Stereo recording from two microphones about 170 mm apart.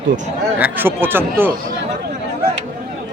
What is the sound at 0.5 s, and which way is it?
Speech, 10° right (ahead or behind).